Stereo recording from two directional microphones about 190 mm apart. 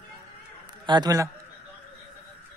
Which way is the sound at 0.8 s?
20° right (ahead or behind).